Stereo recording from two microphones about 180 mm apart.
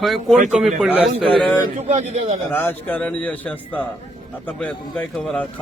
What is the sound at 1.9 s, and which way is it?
Speech, 40° right (ahead or behind).